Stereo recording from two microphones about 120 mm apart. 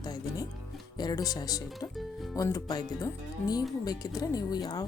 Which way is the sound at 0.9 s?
30° left (ahead or behind).